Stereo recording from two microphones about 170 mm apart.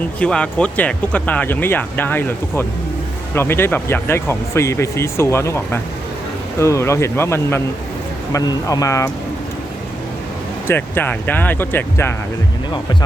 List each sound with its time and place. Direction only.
0.2 s speech: 5° left (ahead or behind)
10.7 s speech: 10° left (ahead or behind)